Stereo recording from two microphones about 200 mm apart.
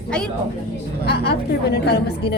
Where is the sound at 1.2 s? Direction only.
55° left (ahead or behind).